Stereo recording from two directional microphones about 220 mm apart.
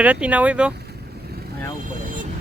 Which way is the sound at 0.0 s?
5° right (ahead or behind).